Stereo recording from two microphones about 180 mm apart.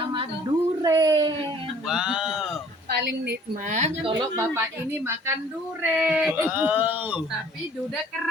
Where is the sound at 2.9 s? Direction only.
60° right (ahead or behind).